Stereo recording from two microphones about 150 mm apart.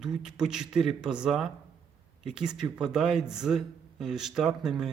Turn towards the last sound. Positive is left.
turn(degrees=-5)  # may be behind; listen again after turning